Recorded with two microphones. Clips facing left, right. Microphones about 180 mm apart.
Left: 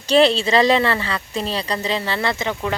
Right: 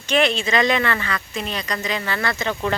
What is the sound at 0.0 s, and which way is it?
Speech, 35° left (ahead or behind).